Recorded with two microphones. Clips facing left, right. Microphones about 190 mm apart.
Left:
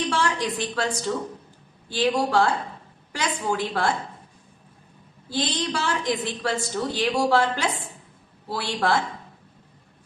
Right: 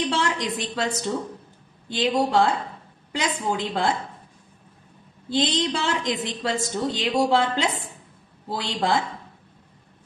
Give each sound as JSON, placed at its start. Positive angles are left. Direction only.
{"t": 0.1, "sound": "a woman's voice", "side_deg": -20}
{"t": 5.3, "sound": "a woman's voice", "side_deg": -20}